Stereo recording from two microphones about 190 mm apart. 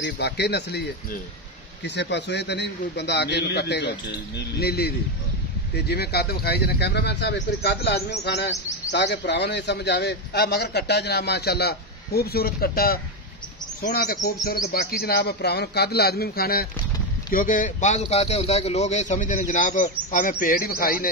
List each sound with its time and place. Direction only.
0.0 s a man's voice: 60° left (ahead or behind)